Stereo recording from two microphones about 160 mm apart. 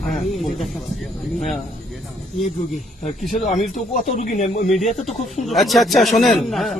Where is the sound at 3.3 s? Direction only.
50° left (ahead or behind).